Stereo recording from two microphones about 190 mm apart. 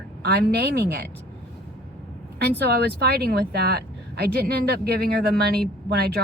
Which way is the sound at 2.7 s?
55° right (ahead or behind).